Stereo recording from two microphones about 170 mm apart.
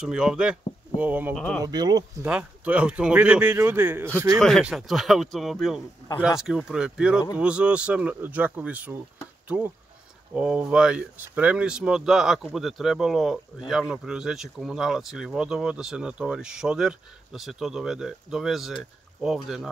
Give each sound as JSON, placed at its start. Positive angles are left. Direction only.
{"t": 0.0, "sound": "speech", "side_deg": -5}
{"t": 1.3, "sound": "speech", "side_deg": 5}
{"t": 1.6, "sound": "speech", "side_deg": -25}
{"t": 2.2, "sound": "speech", "side_deg": -10}
{"t": 4.4, "sound": "speech", "side_deg": 0}
{"t": 10.3, "sound": "speech", "side_deg": -5}